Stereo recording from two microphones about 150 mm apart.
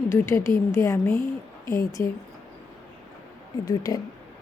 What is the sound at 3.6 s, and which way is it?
Speech, 25° left (ahead or behind).